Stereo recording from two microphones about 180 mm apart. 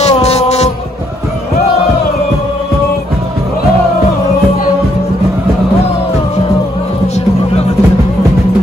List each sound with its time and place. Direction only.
0.0 s music: 35° left (ahead or behind)